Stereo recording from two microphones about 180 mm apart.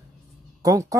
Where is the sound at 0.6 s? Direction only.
20° right (ahead or behind).